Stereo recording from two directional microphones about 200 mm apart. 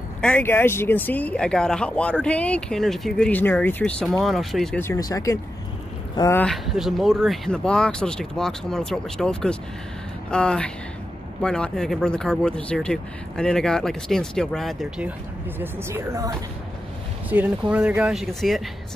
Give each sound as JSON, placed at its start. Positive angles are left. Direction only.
{"t": 0.2, "sound": "speech", "side_deg": 10}
{"t": 4.8, "sound": "speech", "side_deg": 15}
{"t": 6.4, "sound": "speech", "side_deg": 0}
{"t": 15.6, "sound": "a woman's voice", "side_deg": -15}